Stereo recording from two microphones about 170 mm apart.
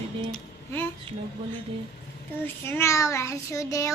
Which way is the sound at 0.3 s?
10° left (ahead or behind).